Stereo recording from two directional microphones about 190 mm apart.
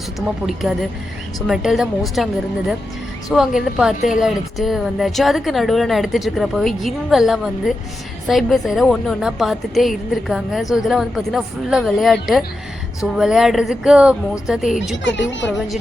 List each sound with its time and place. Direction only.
0.2 s a woman's voice: centre (ahead or behind)
15.0 s a woman's voice: 70° left (ahead or behind)
15.4 s a woman's voice: centre (ahead or behind)